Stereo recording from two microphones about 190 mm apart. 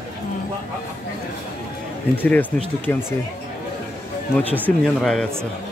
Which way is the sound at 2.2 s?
10° left (ahead or behind).